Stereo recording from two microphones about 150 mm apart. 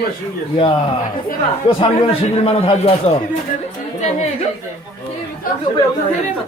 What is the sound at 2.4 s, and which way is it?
Speech, 40° left (ahead or behind).